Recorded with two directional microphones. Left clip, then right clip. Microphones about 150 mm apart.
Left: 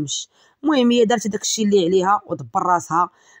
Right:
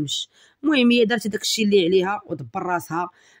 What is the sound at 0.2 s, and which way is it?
Speech, 10° right (ahead or behind).